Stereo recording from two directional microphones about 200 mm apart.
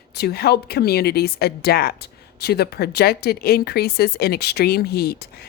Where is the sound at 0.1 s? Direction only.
50° left (ahead or behind).